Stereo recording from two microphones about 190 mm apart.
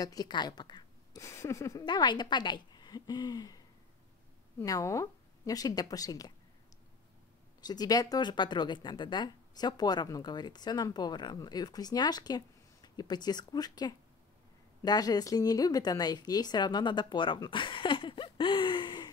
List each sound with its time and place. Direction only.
0.0 s speech: 20° left (ahead or behind)
7.6 s speech: 20° left (ahead or behind)